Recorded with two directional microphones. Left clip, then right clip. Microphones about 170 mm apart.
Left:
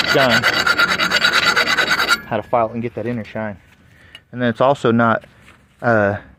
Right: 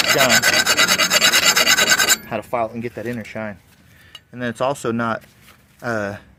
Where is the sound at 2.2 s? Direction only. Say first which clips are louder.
Left 5 dB; 45° left (ahead or behind).